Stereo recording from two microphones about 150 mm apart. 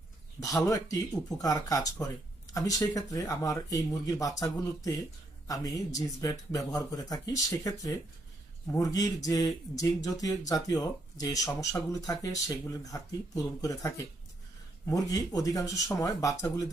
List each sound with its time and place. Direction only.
0.4 s speech: 25° left (ahead or behind)